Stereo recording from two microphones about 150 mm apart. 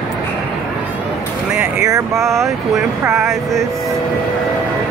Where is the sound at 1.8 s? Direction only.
20° right (ahead or behind).